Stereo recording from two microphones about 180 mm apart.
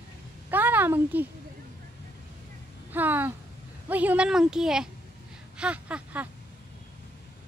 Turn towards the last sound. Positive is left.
turn(degrees=-5)  # may be behind; listen again after turning